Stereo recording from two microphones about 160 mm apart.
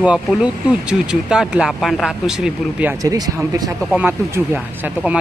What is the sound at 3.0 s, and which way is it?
Speech, 20° right (ahead or behind).